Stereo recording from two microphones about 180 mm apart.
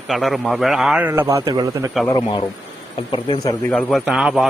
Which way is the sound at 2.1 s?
25° left (ahead or behind).